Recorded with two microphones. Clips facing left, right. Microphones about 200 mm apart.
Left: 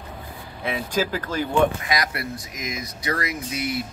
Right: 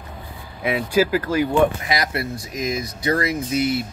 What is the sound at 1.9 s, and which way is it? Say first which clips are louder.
Speech: right 3 dB; 25° right (ahead or behind).